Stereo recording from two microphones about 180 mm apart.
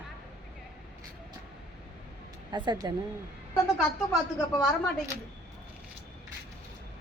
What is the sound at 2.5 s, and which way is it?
Speech, 25° right (ahead or behind).